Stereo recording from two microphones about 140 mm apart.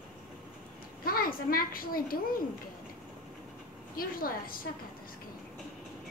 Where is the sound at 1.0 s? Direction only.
90° left.